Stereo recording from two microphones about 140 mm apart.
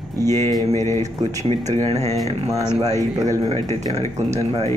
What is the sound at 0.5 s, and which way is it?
Mantra, 20° left (ahead or behind).